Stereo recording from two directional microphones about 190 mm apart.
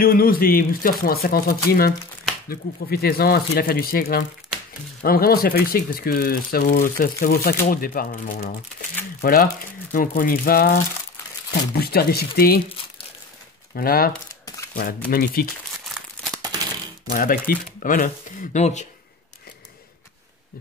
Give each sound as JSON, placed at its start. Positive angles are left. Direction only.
{"t": 0.0, "sound": "speech", "side_deg": 50}
{"t": 13.7, "sound": "speech", "side_deg": 50}
{"t": 15.8, "sound": "crumpling", "side_deg": 0}
{"t": 17.1, "sound": "speech", "side_deg": 45}